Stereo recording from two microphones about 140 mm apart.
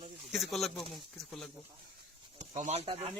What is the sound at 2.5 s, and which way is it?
Speech, 55° right (ahead or behind).